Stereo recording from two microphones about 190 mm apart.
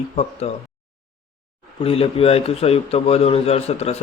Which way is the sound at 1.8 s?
30° left (ahead or behind).